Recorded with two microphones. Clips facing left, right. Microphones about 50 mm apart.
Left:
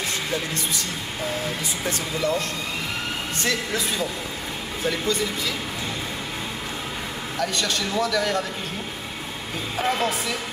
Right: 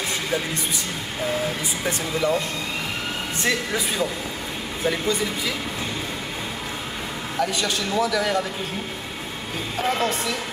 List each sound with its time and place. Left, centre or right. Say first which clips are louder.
2.2 s a man's voice: right 2 dB; centre
3.4 s a man's voice: right 2 dB; centre
7.3 s a man's voice: right 1 dB; centre
9.8 s a woman's voice: even; centre